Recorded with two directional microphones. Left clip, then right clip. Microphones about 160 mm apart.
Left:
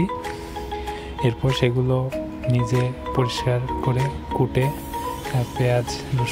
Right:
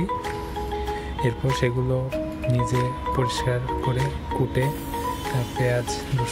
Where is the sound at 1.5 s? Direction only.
25° left (ahead or behind).